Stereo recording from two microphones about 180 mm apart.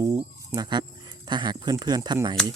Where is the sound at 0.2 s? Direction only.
25° right (ahead or behind).